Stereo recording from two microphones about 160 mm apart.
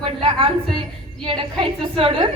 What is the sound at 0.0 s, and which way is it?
A woman's voice, 35° right (ahead or behind).